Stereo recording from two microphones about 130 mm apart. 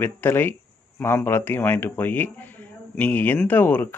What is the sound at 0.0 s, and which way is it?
Speech, 15° left (ahead or behind).